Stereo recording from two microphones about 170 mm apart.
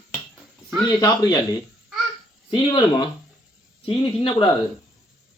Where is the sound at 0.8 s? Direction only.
25° left (ahead or behind).